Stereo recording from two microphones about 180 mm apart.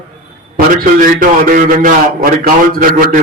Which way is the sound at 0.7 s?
50° right (ahead or behind).